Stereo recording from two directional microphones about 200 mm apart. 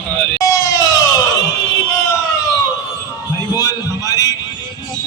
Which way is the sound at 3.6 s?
20° left (ahead or behind).